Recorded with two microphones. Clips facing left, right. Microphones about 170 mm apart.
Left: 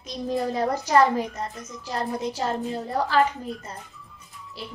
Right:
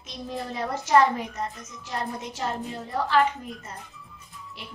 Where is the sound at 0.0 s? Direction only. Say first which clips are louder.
Left 7 dB; 40° left (ahead or behind).